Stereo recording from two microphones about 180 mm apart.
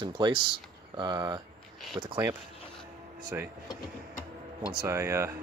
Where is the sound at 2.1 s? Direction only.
10° right (ahead or behind).